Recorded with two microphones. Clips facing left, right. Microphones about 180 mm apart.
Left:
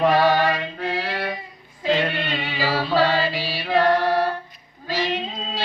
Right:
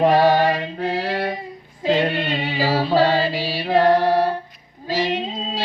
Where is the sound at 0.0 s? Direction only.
35° right (ahead or behind).